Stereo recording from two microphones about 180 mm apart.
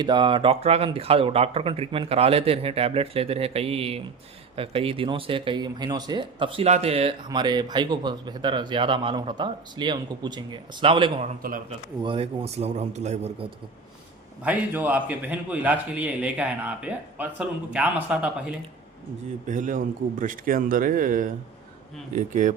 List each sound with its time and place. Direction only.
0.0 s a man's voice: 25° right (ahead or behind)
14.4 s a man's voice: 10° right (ahead or behind)
19.5 s a man's voice: 45° right (ahead or behind)